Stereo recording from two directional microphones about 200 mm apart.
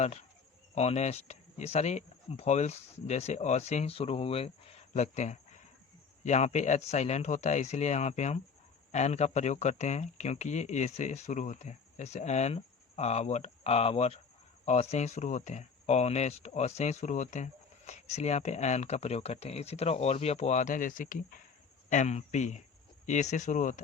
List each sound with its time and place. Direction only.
0.0 s speech: 30° left (ahead or behind)